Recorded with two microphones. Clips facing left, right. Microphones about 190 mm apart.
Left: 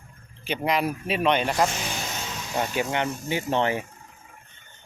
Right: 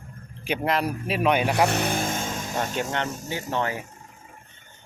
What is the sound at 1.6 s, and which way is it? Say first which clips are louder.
Vehicle: right 6 dB; 60° right (ahead or behind).